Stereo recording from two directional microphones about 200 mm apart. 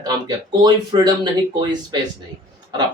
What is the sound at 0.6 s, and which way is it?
Speech, 20° right (ahead or behind).